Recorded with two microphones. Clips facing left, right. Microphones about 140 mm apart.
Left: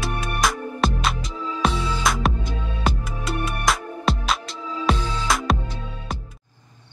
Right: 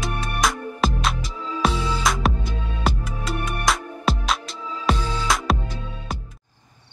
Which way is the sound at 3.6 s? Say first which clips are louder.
Even; centre (ahead or behind).